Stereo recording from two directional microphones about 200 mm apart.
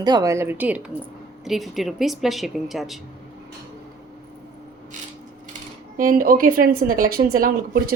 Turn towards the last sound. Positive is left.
turn(degrees=-45)  # may be behind; listen again after turning